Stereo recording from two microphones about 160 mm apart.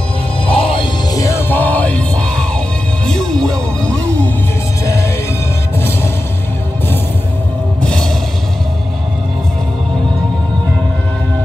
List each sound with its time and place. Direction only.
0.5 s music: 35° left (ahead or behind); by 4.0 s 5° left (ahead or behind)
4.8 s music: 20° left (ahead or behind)
7.8 s music: 5° left (ahead or behind)